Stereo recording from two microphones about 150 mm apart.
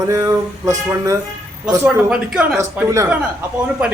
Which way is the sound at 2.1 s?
5° right (ahead or behind).